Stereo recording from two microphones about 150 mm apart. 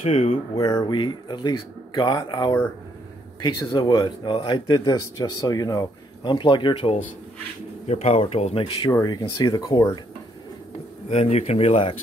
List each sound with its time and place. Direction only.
0.0 s speech: 45° left (ahead or behind)
0.6 s speech: 25° left (ahead or behind)
8.9 s speech: 25° left (ahead or behind)
11.1 s speech: 45° left (ahead or behind)